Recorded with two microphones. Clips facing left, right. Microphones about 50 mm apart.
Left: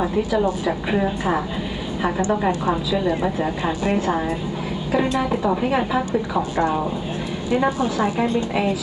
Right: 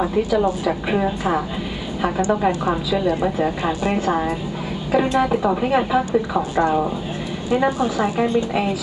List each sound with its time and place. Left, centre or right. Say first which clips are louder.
0.7 s a woman's voice: right 1 dB; centre
2.4 s a woman's voice: right 1 dB; centre
4.9 s a woman's voice: right 3 dB; right
7.5 s a woman's voice: right 1 dB; right
8.2 s a woman's voice: right 1 dB; centre